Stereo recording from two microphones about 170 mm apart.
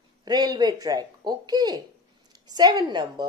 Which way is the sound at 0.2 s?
25° right (ahead or behind).